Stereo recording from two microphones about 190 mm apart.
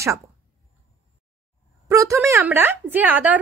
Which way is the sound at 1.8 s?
15° right (ahead or behind).